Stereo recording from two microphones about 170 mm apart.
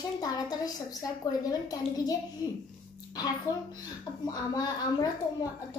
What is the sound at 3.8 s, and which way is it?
A child's voice, 20° left (ahead or behind).